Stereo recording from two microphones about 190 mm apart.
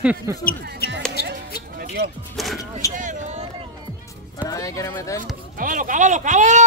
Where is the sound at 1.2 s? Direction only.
55° left (ahead or behind).